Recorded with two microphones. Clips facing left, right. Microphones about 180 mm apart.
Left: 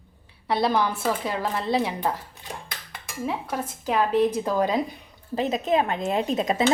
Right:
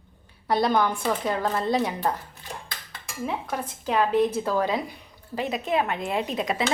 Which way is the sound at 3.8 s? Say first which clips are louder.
Left 1 dB; 10° left (ahead or behind).